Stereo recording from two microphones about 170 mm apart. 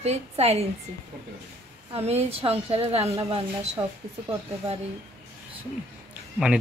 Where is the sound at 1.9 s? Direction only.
35° right (ahead or behind).